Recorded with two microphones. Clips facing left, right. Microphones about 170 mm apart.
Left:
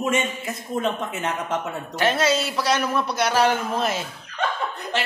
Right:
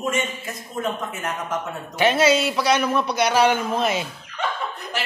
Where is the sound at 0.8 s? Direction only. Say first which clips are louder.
Left 1 dB; 25° left (ahead or behind).